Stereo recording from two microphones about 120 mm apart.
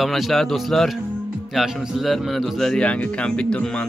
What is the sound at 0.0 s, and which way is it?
A man's voice, centre (ahead or behind).